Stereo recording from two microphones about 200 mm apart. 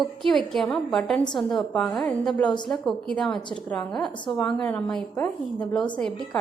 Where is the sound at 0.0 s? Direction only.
Centre (ahead or behind).